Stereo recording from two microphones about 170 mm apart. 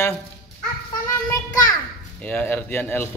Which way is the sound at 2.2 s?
10° left (ahead or behind).